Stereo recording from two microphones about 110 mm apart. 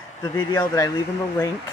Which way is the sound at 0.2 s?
35° left (ahead or behind).